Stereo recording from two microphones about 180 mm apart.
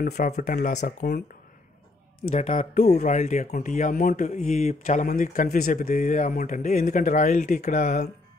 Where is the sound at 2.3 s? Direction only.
40° left (ahead or behind).